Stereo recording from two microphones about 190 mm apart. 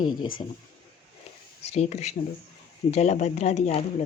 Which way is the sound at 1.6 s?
35° left (ahead or behind).